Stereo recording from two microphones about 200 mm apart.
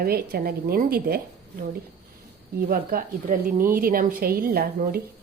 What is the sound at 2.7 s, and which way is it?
A woman's voice, 45° right (ahead or behind).